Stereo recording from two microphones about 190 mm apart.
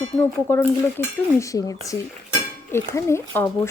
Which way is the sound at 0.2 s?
10° left (ahead or behind).